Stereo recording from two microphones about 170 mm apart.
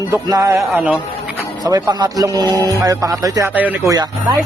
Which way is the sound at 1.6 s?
25° right (ahead or behind).